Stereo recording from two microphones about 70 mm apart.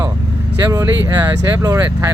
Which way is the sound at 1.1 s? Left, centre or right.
Right.